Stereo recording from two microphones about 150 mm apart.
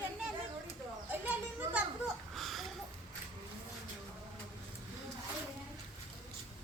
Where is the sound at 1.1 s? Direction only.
10° right (ahead or behind).